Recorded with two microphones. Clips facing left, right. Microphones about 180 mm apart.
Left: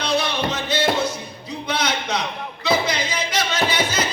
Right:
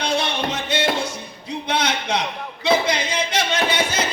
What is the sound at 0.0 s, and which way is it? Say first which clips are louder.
Music: left 1 dB; 25° right (ahead or behind).